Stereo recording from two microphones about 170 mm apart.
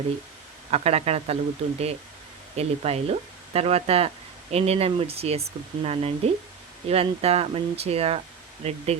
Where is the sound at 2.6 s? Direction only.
40° right (ahead or behind).